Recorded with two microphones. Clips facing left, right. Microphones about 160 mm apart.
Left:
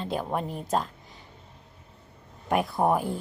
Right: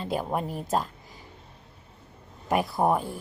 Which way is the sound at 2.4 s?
Centre (ahead or behind).